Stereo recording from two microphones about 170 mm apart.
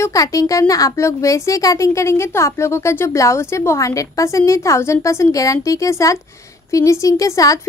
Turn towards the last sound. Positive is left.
turn(degrees=20)  # may be behind; listen again after turning